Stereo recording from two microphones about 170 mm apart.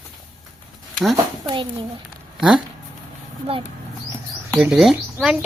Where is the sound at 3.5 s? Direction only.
35° right (ahead or behind).